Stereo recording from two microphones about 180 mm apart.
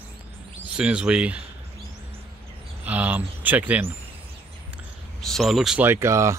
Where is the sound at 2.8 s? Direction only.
10° right (ahead or behind).